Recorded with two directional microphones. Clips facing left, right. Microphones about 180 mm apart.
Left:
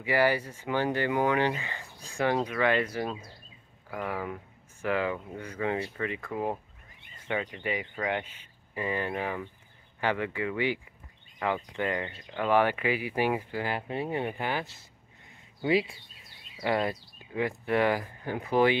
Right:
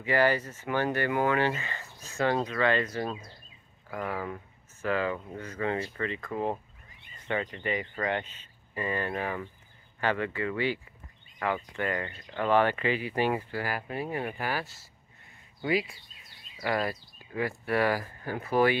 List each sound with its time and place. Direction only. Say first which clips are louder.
0.0 s speech: even; 10° left (ahead or behind)